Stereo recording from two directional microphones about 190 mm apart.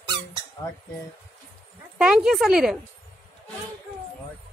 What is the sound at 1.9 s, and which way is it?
Speech, 5° right (ahead or behind).